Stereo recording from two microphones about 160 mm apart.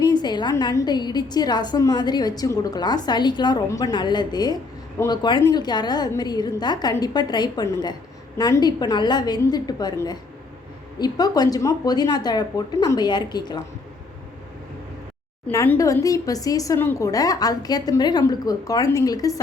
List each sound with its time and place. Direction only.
0.0 s a woman's voice: 25° left (ahead or behind)
15.4 s a woman's voice: 15° left (ahead or behind)